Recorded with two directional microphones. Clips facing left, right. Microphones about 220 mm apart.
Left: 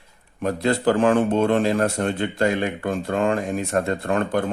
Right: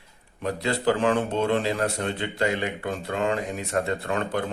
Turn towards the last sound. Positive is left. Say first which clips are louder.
# left 5 dB
turn(degrees=50)  # may be behind; listen again after turning